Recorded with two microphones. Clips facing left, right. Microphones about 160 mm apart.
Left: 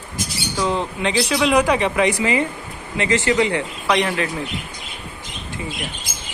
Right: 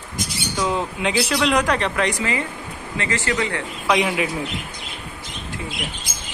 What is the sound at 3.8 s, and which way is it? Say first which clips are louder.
Speech: right 1 dB; 5° right (ahead or behind).